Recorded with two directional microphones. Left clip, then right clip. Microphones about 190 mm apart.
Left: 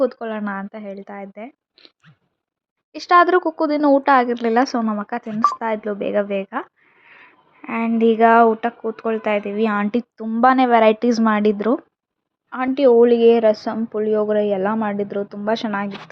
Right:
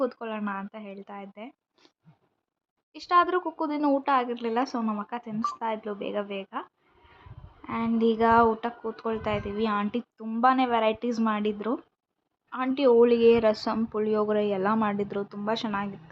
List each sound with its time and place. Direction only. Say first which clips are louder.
0.0 s a woman's voice: left 9 dB; 15° left (ahead or behind)
2.9 s a woman's voice: left 9 dB; 35° left (ahead or behind)